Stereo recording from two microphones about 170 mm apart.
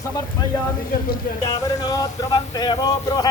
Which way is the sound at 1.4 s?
20° left (ahead or behind).